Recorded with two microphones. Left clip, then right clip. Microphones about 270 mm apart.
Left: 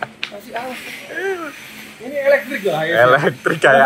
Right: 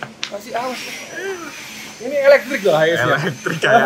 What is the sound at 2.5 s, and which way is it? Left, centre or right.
Speech, right.